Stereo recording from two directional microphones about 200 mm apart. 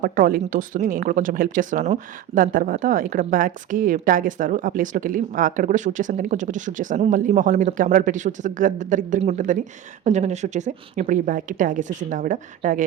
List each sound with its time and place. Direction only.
0.0 s speech: 45° right (ahead or behind)